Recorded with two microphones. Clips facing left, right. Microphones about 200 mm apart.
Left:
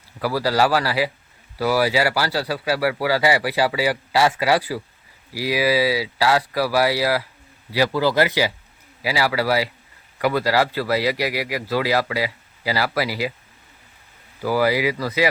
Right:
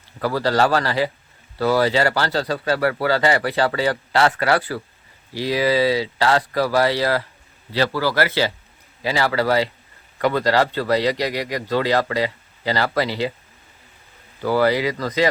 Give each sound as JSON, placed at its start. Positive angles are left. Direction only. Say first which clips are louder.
{"t": 0.2, "sound": "speech", "louder": "right 1 dB", "side_deg": 10}
{"t": 14.4, "sound": "speech", "louder": "right 1 dB", "side_deg": 10}